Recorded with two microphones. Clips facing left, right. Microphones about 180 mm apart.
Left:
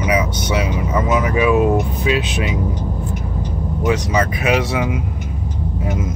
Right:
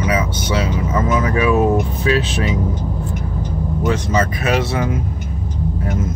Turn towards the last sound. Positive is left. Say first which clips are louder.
# left 1 dB
turn(degrees=15)  # may be behind; listen again after turning